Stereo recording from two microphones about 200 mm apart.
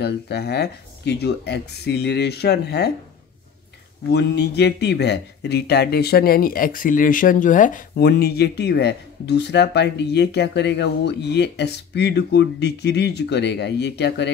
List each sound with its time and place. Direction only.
0.0 s speech: 55° left (ahead or behind)
4.1 s speech: 55° left (ahead or behind); by 7.8 s 40° left (ahead or behind)
7.9 s speech: 55° left (ahead or behind)